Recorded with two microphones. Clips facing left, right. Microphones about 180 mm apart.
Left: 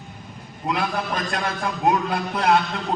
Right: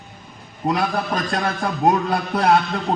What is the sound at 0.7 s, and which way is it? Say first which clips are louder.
A man's voice: right 3 dB; 40° right (ahead or behind).